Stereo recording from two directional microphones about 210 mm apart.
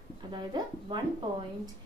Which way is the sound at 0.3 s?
20° right (ahead or behind).